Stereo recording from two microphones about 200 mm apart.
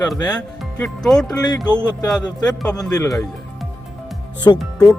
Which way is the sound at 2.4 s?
5° left (ahead or behind).